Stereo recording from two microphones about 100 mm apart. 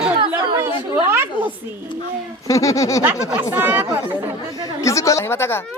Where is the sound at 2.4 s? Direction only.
35° left (ahead or behind).